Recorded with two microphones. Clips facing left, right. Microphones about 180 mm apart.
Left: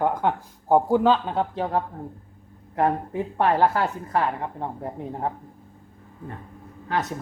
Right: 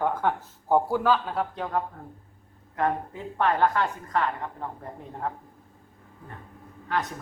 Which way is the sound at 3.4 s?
30° left (ahead or behind).